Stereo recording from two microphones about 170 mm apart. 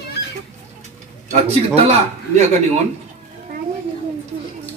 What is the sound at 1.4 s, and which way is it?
A man's voice, 40° right (ahead or behind).